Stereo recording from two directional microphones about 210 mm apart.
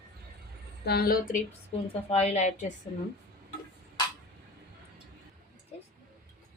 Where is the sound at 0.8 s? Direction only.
50° left (ahead or behind).